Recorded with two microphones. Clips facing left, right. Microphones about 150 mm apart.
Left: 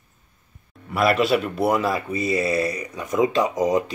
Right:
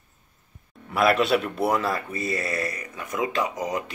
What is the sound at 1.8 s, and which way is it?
Speech, 15° left (ahead or behind).